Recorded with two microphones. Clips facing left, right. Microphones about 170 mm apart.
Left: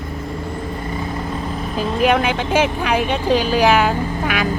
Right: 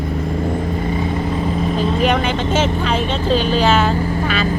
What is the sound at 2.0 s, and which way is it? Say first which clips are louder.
Speech: left 5 dB; 10° left (ahead or behind).